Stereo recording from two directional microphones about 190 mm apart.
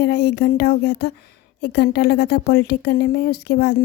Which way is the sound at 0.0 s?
60° left (ahead or behind).